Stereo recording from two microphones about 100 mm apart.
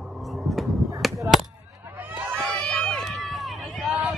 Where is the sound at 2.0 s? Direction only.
20° right (ahead or behind).